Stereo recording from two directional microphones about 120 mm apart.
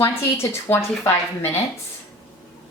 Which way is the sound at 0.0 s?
20° left (ahead or behind).